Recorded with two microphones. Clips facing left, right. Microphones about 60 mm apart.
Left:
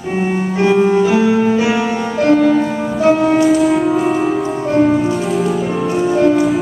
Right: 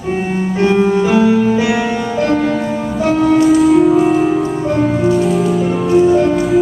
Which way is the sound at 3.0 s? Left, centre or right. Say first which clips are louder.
Left 1 dB; left.